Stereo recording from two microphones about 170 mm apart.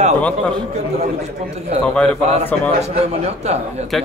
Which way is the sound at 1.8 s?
5° left (ahead or behind).